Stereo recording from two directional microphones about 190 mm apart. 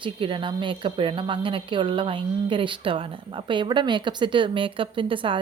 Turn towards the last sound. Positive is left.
turn(degrees=-25)  # may be behind; listen again after turning